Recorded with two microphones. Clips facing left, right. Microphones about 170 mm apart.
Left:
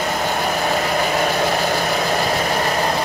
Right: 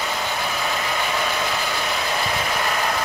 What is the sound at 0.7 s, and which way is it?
Vehicle, 45° left (ahead or behind).